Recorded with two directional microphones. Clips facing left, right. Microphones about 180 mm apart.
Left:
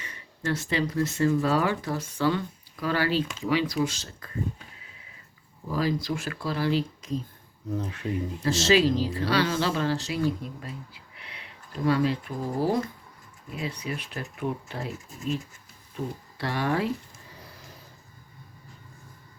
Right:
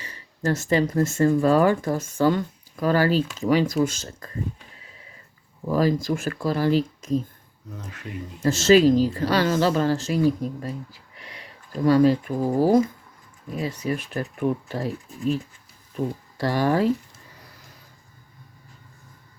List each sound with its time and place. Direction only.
0.0 s speech: 35° right (ahead or behind)
5.7 s speech: 45° right (ahead or behind)
8.4 s speech: 45° right (ahead or behind)
16.4 s speech: 40° right (ahead or behind)